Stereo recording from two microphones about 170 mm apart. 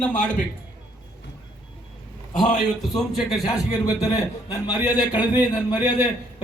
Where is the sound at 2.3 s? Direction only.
5° left (ahead or behind).